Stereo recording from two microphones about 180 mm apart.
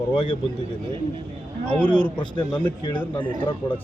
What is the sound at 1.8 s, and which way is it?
Speech, 5° left (ahead or behind).